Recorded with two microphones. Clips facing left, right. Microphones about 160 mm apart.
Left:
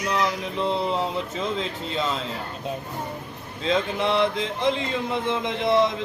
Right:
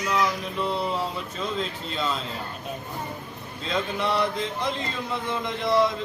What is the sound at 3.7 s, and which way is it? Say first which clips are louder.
Speech: left 3 dB; 20° left (ahead or behind).